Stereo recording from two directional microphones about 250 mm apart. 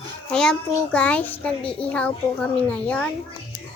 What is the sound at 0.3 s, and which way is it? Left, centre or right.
A child's voice, centre.